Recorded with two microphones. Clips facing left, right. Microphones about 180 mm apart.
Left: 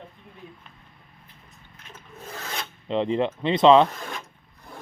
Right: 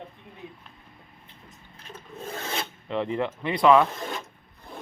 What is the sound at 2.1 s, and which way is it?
Filing, 25° right (ahead or behind).